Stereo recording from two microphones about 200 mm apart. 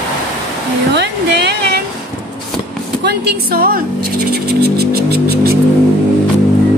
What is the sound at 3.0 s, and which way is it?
Music, 55° right (ahead or behind).